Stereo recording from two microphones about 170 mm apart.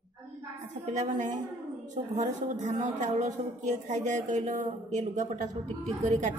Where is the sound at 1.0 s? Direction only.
45° right (ahead or behind).